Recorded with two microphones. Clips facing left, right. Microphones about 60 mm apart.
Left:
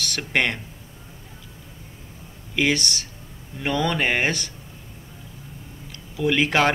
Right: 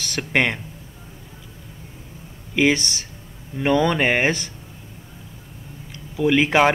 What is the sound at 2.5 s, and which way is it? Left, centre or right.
Speech, centre.